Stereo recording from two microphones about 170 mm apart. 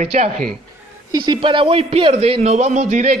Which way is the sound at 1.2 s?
30° right (ahead or behind).